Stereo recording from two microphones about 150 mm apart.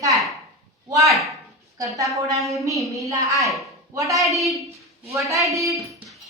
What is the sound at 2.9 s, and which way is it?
Speech, 20° right (ahead or behind).